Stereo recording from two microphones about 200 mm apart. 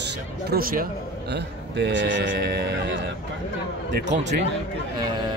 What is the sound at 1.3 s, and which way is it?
Speech, 60° right (ahead or behind).